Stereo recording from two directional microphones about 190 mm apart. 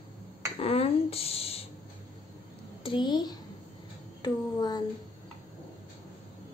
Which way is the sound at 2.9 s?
25° left (ahead or behind).